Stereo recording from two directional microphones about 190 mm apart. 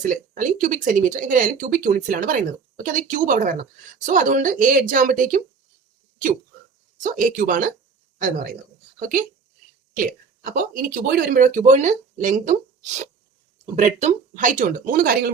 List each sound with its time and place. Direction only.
0.0 s speech: 45° right (ahead or behind)
7.0 s speech: 45° right (ahead or behind)
9.0 s speech: 45° right (ahead or behind)